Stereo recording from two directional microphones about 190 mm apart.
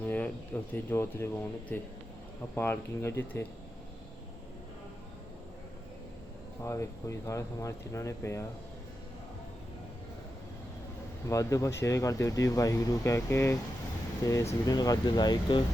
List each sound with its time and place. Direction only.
0.7 s speech: 10° left (ahead or behind)
6.6 s speech: 15° left (ahead or behind)
11.3 s speech: 15° left (ahead or behind)